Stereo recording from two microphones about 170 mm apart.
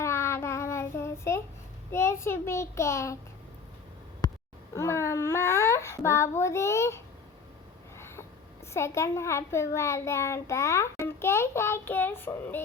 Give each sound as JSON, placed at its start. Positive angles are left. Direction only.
{"t": 0.0, "sound": "child singing", "side_deg": 15}
{"t": 1.9, "sound": "a child's voice", "side_deg": 15}
{"t": 4.7, "sound": "a child's voice", "side_deg": 15}
{"t": 7.9, "sound": "a sound", "side_deg": 15}
{"t": 8.7, "sound": "a child's voice", "side_deg": 15}